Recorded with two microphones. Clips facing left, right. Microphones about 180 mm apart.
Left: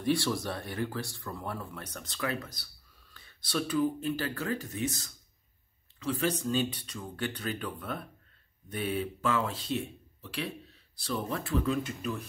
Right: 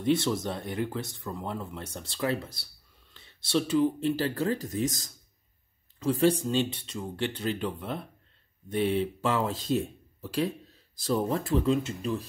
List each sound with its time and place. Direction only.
0.0 s speech: 20° right (ahead or behind); by 6.3 s 35° right (ahead or behind)
6.4 s speech: 25° right (ahead or behind)